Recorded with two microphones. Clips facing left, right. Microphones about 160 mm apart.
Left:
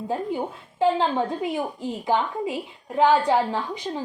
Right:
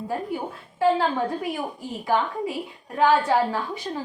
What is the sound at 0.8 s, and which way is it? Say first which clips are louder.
A woman's voice: even; 20° left (ahead or behind).